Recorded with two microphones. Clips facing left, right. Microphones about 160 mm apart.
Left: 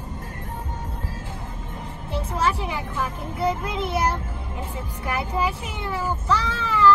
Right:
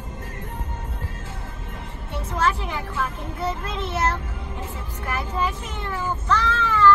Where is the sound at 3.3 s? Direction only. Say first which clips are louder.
Left 4 dB; 10° left (ahead or behind).